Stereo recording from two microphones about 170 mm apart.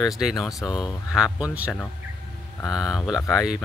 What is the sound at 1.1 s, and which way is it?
Speech, 5° right (ahead or behind).